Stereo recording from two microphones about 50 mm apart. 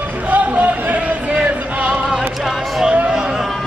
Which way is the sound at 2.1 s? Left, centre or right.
Centre.